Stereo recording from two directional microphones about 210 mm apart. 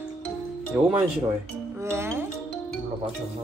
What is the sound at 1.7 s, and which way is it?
Music, 10° right (ahead or behind).